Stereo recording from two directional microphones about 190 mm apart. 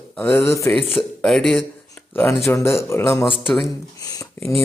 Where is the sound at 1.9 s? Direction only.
15° left (ahead or behind).